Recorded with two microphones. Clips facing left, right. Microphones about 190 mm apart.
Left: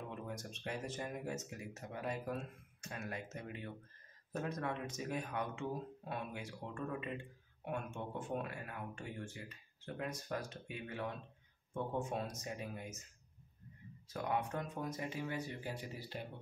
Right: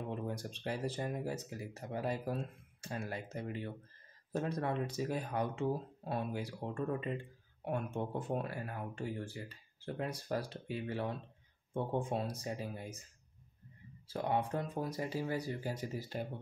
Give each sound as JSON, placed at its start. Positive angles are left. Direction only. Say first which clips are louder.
{"t": 0.1, "sound": "speech", "louder": "right 6 dB", "side_deg": -35}
{"t": 14.0, "sound": "speech", "louder": "right 4 dB", "side_deg": -30}